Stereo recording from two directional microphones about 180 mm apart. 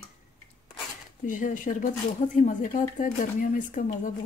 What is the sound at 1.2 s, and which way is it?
Speech, 45° left (ahead or behind).